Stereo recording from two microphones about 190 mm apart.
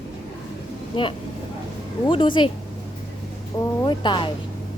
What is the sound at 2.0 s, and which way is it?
Speech, 25° left (ahead or behind).